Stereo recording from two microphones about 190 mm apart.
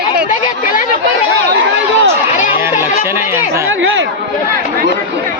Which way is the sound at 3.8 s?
85° right.